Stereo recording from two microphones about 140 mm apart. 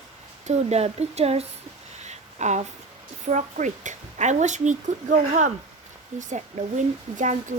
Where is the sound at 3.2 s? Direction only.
60° right (ahead or behind).